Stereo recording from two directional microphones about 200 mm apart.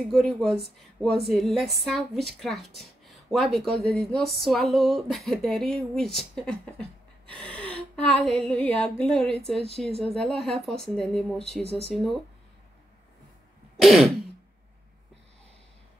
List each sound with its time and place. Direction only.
0.0 s speech: centre (ahead or behind)
7.3 s a sound: 5° left (ahead or behind)
9.8 s speech: 30° right (ahead or behind)
10.1 s speech: centre (ahead or behind)
11.6 s speech: 30° left (ahead or behind)
11.9 s speech: centre (ahead or behind)
13.7 s throat clearing: centre (ahead or behind)